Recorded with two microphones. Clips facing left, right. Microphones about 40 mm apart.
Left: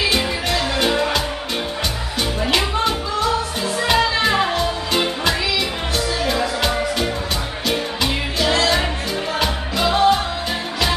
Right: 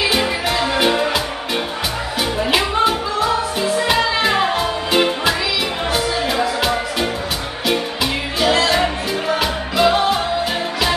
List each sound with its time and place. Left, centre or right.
0.0 s music: centre
0.5 s music: centre
2.4 s music: centre